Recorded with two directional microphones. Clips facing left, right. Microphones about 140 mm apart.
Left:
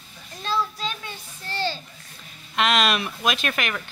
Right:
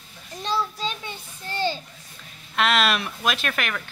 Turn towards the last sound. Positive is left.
turn(degrees=5)  # may be behind; listen again after turning